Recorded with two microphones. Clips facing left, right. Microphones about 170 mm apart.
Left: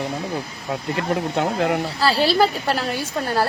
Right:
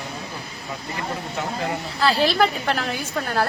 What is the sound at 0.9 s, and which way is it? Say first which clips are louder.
Speech: left 7 dB; 65° left (ahead or behind).